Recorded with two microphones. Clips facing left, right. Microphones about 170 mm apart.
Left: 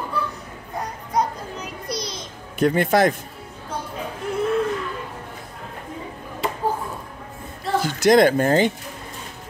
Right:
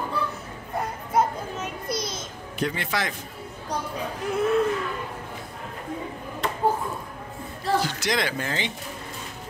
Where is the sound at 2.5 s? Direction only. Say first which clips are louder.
Left 10 dB; 50° left (ahead or behind).